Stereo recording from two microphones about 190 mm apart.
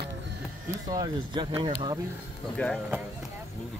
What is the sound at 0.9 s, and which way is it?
Speech, 25° right (ahead or behind).